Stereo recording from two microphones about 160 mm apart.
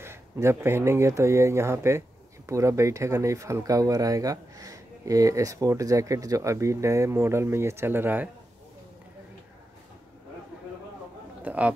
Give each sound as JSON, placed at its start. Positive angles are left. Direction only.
{"t": 0.0, "sound": "speech", "side_deg": -15}
{"t": 11.4, "sound": "speech", "side_deg": -10}